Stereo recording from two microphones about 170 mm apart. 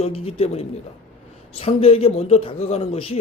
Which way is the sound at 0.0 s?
35° left (ahead or behind).